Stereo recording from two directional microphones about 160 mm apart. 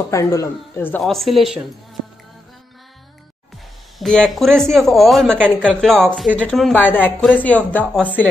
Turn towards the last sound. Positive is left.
turn(degrees=10)  # may be behind; listen again after turning